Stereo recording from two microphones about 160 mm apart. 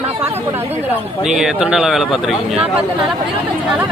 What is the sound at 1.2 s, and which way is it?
Speech, 5° right (ahead or behind).